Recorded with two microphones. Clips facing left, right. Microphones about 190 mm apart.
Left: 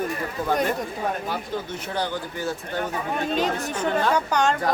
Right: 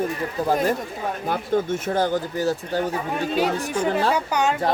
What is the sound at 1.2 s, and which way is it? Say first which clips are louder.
Speech: right 7 dB; 50° right (ahead or behind).